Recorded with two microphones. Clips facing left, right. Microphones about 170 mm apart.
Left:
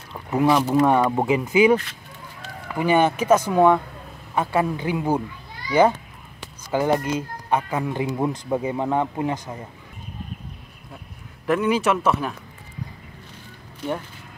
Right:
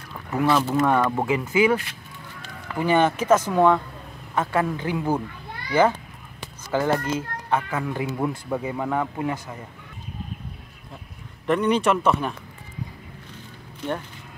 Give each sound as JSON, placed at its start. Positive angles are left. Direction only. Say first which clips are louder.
{"t": 0.1, "sound": "a child's voice", "louder": "left 2 dB", "side_deg": 20}
{"t": 11.4, "sound": "speech", "louder": "even", "side_deg": 5}